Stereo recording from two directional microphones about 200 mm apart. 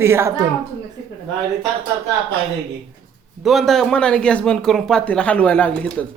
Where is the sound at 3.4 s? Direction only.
Centre (ahead or behind).